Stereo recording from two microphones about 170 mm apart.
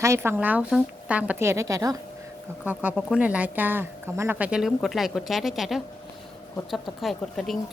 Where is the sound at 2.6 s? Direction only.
10° right (ahead or behind).